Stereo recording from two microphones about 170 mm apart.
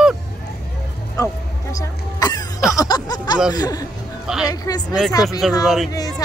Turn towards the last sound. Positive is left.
turn(degrees=0)  # may be behind; listen again after turning